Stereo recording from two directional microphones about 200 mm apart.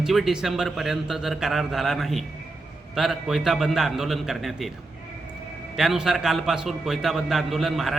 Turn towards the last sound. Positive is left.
turn(degrees=0)  # may be behind; listen again after turning